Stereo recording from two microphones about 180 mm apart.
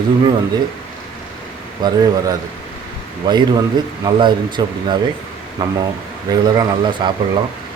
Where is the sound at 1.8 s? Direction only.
25° right (ahead or behind).